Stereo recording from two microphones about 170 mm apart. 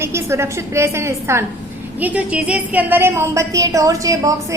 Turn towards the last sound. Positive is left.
turn(degrees=-20)  # may be behind; listen again after turning